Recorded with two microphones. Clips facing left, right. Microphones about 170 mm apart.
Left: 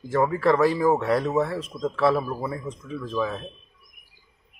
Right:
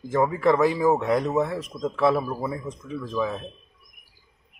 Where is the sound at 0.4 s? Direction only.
15° right (ahead or behind).